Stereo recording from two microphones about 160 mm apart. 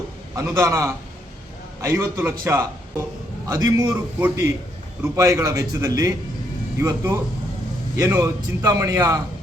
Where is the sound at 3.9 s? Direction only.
10° right (ahead or behind).